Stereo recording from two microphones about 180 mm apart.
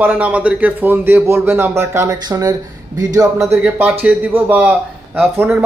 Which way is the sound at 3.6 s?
10° right (ahead or behind).